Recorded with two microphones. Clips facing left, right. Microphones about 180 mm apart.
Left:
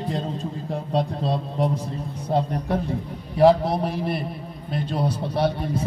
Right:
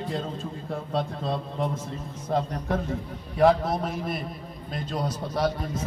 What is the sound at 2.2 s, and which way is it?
A man's voice, 30° left (ahead or behind).